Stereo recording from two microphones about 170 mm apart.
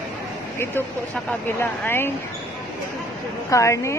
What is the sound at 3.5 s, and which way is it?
Speech, 15° left (ahead or behind).